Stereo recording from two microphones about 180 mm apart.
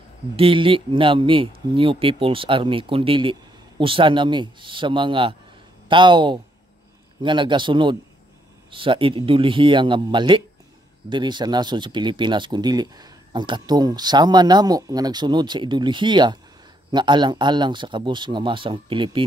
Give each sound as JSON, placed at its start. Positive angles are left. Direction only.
{"t": 0.4, "sound": "speech", "side_deg": -30}